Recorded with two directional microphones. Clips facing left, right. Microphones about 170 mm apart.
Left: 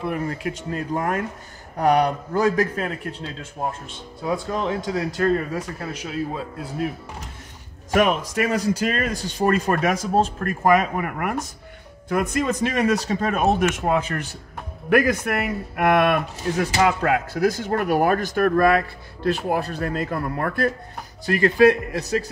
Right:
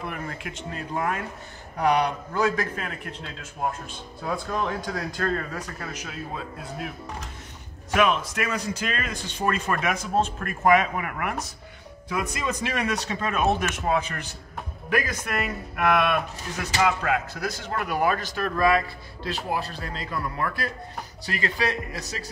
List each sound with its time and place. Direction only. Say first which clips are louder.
0.0 s speech: left 8 dB; 35° left (ahead or behind)
4.2 s speech: left 4 dB; 15° left (ahead or behind)
5.8 s a man's voice: left 7 dB; 30° left (ahead or behind)
7.9 s speech: left 3 dB; 40° left (ahead or behind)
14.9 s a man's voice: left 9 dB; 60° left (ahead or behind)
15.7 s a man's voice: left 4 dB; 45° left (ahead or behind)